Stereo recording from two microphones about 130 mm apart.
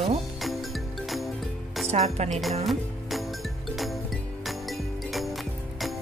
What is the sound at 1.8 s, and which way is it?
Speech, 55° right (ahead or behind).